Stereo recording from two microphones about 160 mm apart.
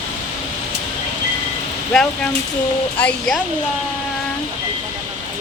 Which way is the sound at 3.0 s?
5° left (ahead or behind).